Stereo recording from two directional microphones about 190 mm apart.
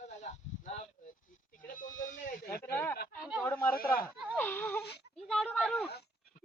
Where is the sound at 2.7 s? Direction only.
15° left (ahead or behind).